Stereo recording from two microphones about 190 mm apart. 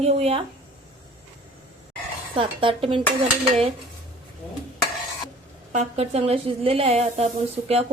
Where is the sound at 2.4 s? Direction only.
25° right (ahead or behind).